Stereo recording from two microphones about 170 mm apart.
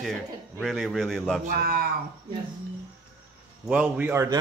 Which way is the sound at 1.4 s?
65° right (ahead or behind).